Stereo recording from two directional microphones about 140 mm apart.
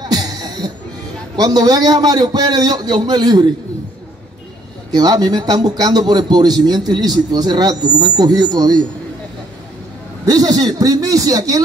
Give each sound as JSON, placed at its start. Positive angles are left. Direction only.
{"t": 0.1, "sound": "music", "side_deg": -30}
{"t": 1.3, "sound": "a man's voice", "side_deg": -30}
{"t": 4.9, "sound": "a man's voice", "side_deg": -25}
{"t": 10.2, "sound": "a man's voice", "side_deg": -25}